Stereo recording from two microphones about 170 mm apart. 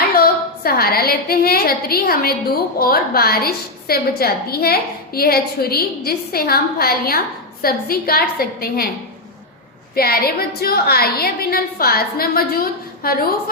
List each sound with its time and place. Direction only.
0.2 s a woman's voice: 60° left (ahead or behind)
9.9 s a woman's voice: 60° left (ahead or behind)